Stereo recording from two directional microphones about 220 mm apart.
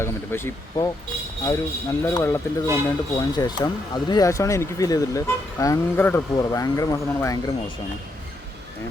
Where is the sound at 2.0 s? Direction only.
10° left (ahead or behind).